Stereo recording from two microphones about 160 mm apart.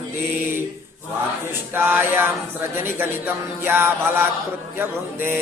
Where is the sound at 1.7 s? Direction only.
10° right (ahead or behind).